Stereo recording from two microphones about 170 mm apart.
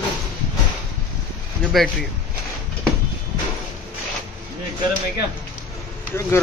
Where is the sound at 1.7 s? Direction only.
Centre (ahead or behind).